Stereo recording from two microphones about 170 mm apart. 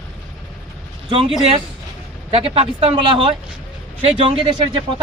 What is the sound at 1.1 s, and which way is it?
Speech, 35° right (ahead or behind).